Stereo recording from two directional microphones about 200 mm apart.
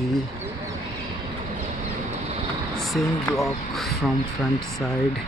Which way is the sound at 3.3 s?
15° left (ahead or behind).